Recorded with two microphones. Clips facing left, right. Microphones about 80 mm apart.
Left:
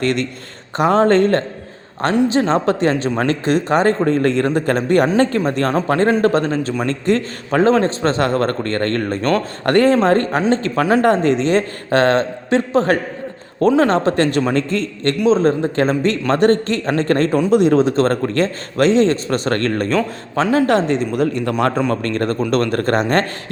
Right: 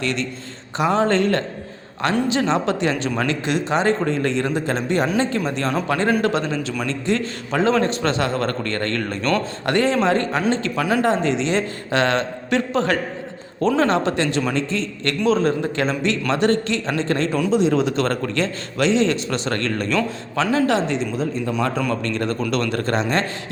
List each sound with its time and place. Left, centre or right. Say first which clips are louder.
0.0 s a man's voice: left 5 dB; left
5.9 s a man's voice: left 5 dB; left
11.0 s a man's voice: left 5 dB; left
15.3 s a man's voice: left 4 dB; left
17.5 s a man's voice: left 5 dB; left
17.7 s a man's voice: left 5 dB; left
20.7 s a man's voice: left 4 dB; left
22.0 s a man's voice: left 4 dB; left